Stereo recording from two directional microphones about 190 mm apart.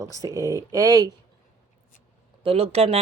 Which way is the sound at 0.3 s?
15° right (ahead or behind).